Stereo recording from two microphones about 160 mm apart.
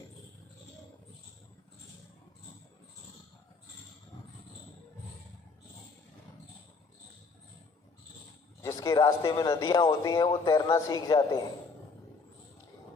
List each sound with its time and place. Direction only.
8.6 s speech: 20° left (ahead or behind)